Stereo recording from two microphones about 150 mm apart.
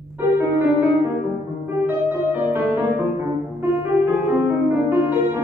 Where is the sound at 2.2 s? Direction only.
15° right (ahead or behind).